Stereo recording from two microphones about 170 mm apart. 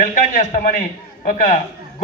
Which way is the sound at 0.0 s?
50° left (ahead or behind).